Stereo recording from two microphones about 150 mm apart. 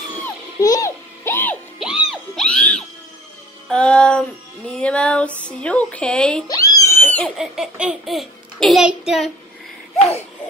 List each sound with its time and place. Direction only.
0.6 s a sound: 25° left (ahead or behind)
1.8 s music: centre (ahead or behind)
4.6 s speech: 5° left (ahead or behind)
6.4 s cat: 25° left (ahead or behind)
7.3 s a child's voice: centre (ahead or behind)